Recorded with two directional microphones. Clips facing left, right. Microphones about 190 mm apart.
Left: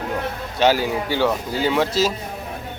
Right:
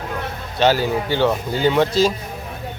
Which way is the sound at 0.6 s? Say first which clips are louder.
Right 1 dB; 10° left (ahead or behind).